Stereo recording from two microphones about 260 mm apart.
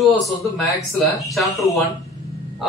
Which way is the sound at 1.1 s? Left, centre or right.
Centre.